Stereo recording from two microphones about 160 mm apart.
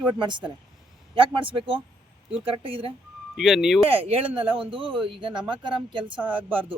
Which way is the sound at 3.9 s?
35° right (ahead or behind).